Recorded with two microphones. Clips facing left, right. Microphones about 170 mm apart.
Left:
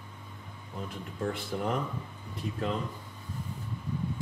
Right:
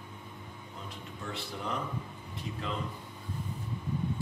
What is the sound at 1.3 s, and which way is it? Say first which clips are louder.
Speech: left 6 dB; 50° left (ahead or behind).